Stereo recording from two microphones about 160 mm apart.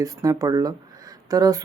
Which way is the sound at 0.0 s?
20° right (ahead or behind).